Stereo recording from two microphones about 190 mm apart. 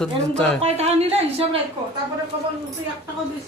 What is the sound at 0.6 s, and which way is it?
Speech, 35° right (ahead or behind).